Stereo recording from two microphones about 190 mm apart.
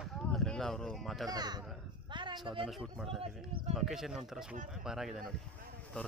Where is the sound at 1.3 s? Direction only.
20° right (ahead or behind).